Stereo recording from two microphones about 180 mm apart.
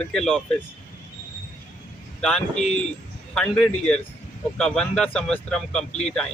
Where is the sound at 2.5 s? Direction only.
40° left (ahead or behind).